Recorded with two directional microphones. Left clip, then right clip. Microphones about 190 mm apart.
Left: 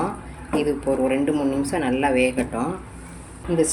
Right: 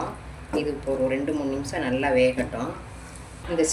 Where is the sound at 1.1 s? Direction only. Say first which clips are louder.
Left 4 dB; 50° left (ahead or behind).